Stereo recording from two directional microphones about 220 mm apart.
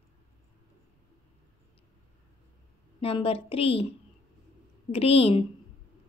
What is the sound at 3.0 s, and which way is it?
Speech, 25° left (ahead or behind).